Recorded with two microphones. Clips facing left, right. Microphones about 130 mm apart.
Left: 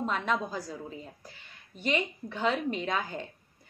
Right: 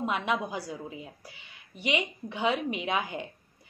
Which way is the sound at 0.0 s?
10° right (ahead or behind).